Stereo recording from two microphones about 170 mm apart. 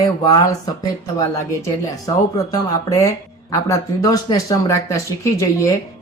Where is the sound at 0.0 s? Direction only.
25° left (ahead or behind).